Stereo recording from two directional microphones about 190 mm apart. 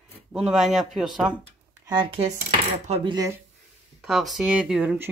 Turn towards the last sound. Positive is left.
turn(degrees=-5)  # may be behind; listen again after turning